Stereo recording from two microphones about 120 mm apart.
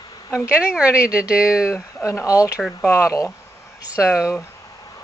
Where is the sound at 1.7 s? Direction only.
20° left (ahead or behind).